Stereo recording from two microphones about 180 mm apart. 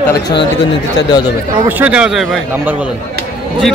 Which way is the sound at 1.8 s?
5° right (ahead or behind).